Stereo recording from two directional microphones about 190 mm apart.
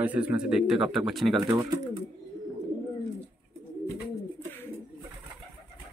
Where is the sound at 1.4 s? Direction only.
15° right (ahead or behind).